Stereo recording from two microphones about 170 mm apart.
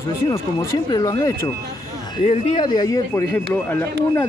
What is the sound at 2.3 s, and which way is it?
Speech, 35° left (ahead or behind).